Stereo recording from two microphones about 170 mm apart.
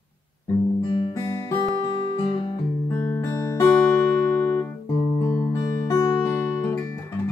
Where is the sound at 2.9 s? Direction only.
15° left (ahead or behind).